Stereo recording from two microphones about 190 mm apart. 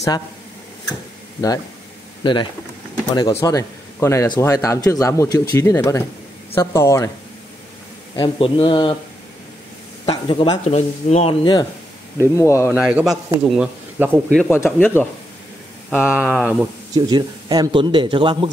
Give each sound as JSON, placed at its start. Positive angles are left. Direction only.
{"t": 2.2, "sound": "a man's voice", "side_deg": 25}
{"t": 8.2, "sound": "a man's voice", "side_deg": 25}
{"t": 10.0, "sound": "speech", "side_deg": 25}
{"t": 10.6, "sound": "speech", "side_deg": 35}
{"t": 12.2, "sound": "speech", "side_deg": 15}
{"t": 12.7, "sound": "a man's voice", "side_deg": -5}
{"t": 14.3, "sound": "speech", "side_deg": 10}
{"t": 16.0, "sound": "speech", "side_deg": -5}
{"t": 16.9, "sound": "a man's voice", "side_deg": -20}